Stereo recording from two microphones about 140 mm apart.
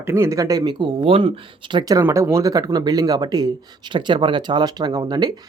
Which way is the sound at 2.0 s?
20° right (ahead or behind).